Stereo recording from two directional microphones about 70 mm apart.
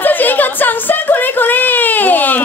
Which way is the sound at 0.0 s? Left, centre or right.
Left.